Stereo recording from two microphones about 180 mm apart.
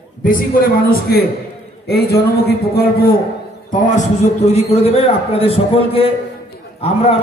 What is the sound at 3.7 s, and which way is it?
A man's voice, 45° left (ahead or behind).